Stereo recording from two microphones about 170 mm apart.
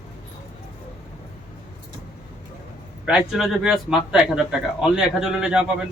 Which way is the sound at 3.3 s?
Centre (ahead or behind).